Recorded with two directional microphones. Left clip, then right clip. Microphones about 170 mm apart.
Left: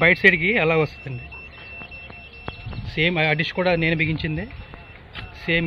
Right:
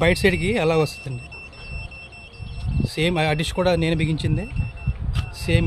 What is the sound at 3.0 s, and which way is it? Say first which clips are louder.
A man's voice: left 2 dB; 15° right (ahead or behind).